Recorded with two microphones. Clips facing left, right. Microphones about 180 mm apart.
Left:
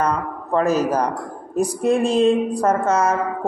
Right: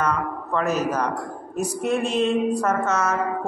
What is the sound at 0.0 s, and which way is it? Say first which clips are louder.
A woman's voice: left 2 dB; 35° left (ahead or behind).